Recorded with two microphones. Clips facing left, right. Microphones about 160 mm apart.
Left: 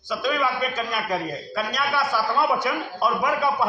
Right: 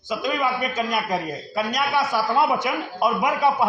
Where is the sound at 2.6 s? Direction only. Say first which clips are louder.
Right 1 dB; 15° right (ahead or behind).